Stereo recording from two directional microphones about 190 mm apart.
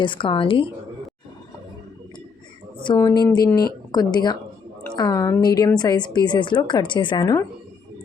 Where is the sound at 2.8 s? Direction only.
20° left (ahead or behind).